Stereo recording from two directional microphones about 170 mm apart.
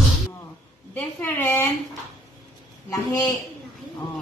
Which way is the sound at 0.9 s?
15° left (ahead or behind).